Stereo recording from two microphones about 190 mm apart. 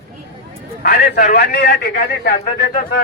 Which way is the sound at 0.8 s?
55° left (ahead or behind).